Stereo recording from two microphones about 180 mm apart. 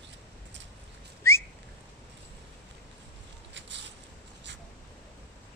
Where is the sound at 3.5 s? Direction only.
85° right.